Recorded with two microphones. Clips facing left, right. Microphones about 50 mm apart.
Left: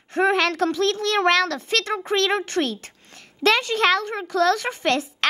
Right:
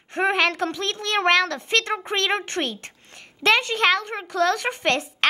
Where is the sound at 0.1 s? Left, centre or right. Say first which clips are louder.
Left 1 dB; centre.